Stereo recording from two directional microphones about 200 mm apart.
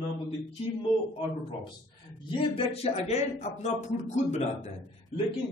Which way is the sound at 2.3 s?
25° left (ahead or behind).